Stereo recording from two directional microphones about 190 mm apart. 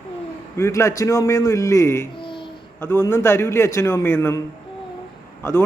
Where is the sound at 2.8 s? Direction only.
10° left (ahead or behind).